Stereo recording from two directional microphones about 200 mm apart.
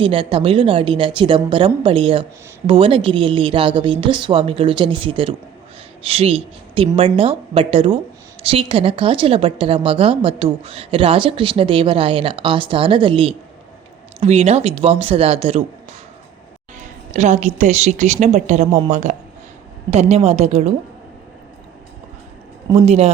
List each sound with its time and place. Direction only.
0.0 s a woman's voice: 25° right (ahead or behind)
16.7 s a woman's voice: 35° right (ahead or behind)